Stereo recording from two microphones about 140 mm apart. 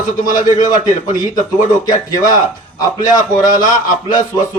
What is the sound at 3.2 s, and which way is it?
Speech, 75° left (ahead or behind).